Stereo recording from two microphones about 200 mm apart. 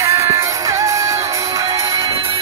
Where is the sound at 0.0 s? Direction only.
15° right (ahead or behind).